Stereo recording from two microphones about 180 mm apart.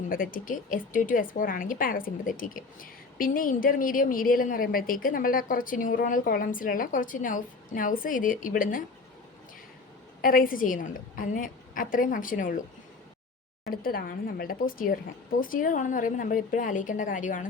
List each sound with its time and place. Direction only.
0.1 s a woman's voice: 50° left (ahead or behind)
10.2 s a woman's voice: 50° left (ahead or behind)
13.8 s a woman's voice: 55° left (ahead or behind)